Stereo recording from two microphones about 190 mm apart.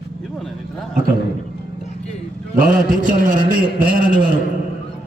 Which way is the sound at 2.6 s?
45° right (ahead or behind).